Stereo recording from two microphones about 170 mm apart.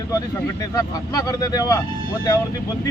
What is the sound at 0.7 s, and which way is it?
Speech, 20° left (ahead or behind).